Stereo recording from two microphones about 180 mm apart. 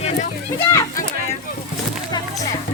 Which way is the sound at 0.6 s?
15° left (ahead or behind).